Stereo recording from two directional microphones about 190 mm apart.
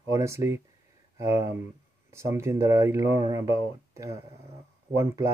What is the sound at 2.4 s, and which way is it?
Speech, 15° right (ahead or behind).